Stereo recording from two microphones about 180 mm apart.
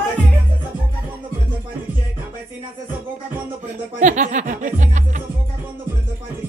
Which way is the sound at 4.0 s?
45° right (ahead or behind).